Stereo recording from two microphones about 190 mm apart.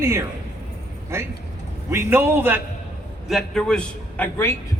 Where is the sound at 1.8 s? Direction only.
10° right (ahead or behind).